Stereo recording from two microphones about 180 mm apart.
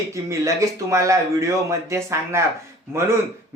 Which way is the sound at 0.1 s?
15° right (ahead or behind).